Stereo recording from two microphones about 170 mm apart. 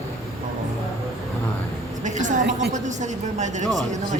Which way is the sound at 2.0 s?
45° right (ahead or behind).